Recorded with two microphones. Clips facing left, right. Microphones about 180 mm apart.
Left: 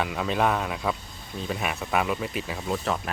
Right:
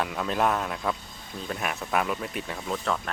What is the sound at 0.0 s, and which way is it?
Speech, centre (ahead or behind).